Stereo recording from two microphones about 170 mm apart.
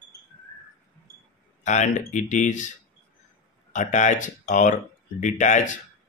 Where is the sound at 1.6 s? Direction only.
45° left (ahead or behind).